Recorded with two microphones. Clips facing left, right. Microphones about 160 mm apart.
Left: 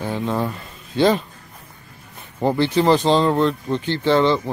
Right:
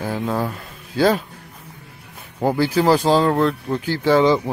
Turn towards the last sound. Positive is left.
turn(degrees=-10)  # may be behind; listen again after turning